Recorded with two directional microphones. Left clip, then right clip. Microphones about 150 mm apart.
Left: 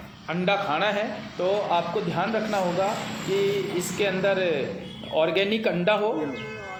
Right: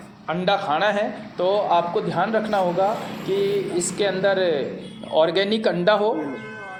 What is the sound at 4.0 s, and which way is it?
A man's voice, 45° right (ahead or behind).